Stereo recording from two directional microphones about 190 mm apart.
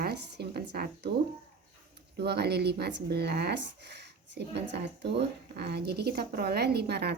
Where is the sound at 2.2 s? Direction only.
60° right (ahead or behind).